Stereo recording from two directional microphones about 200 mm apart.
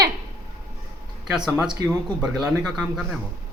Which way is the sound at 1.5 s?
5° right (ahead or behind).